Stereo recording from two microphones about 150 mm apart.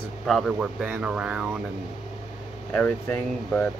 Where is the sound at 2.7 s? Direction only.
10° left (ahead or behind).